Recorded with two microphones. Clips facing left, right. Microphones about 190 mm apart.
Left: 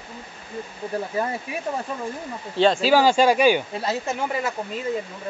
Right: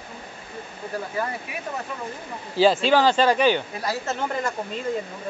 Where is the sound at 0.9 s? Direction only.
25° left (ahead or behind).